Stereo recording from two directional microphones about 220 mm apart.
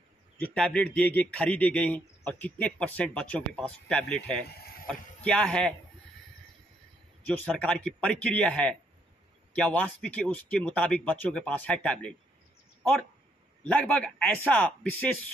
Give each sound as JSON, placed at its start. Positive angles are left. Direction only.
{"t": 0.4, "sound": "speech", "side_deg": 5}
{"t": 4.5, "sound": "a sound", "side_deg": 45}
{"t": 4.8, "sound": "speech", "side_deg": 5}
{"t": 7.2, "sound": "speech", "side_deg": 5}
{"t": 13.7, "sound": "speech", "side_deg": 5}